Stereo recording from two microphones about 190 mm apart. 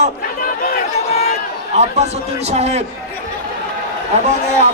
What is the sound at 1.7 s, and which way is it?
A man's voice, 35° right (ahead or behind).